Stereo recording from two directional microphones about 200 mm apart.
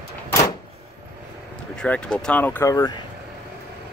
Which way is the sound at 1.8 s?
5° left (ahead or behind).